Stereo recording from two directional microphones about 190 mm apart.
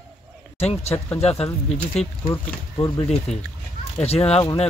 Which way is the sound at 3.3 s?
35° left (ahead or behind).